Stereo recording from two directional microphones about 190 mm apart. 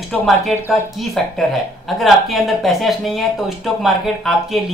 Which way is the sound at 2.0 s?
Centre (ahead or behind).